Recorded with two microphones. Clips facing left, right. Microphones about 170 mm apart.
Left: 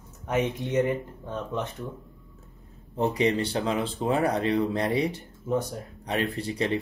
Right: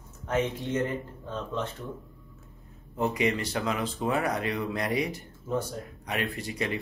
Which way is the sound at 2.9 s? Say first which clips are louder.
Left 3 dB; 30° left (ahead or behind).